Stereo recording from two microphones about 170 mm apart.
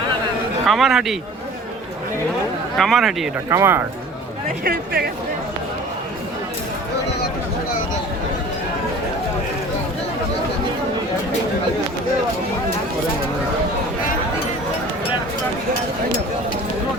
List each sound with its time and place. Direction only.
0.6 s a man's voice: centre (ahead or behind)
2.7 s a man's voice: centre (ahead or behind)
3.5 s speech: 15° right (ahead or behind)
4.6 s speech: 60° right (ahead or behind)